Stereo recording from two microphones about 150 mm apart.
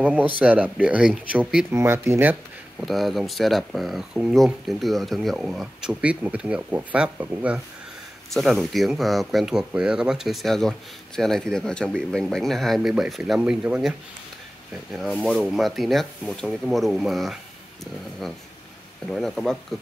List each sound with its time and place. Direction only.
0.0 s speech: 10° right (ahead or behind)
1.7 s speech: 15° right (ahead or behind)
2.8 s speech: centre (ahead or behind)